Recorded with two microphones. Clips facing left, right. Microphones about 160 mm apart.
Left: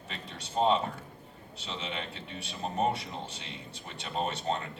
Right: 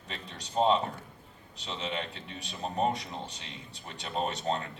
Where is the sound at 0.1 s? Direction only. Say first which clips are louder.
Right 1 dB; 40° right (ahead or behind).